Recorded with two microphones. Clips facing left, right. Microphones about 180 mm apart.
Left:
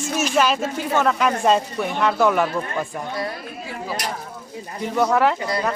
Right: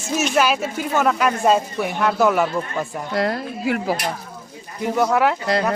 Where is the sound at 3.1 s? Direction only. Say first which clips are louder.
Right 6 dB; 80° right.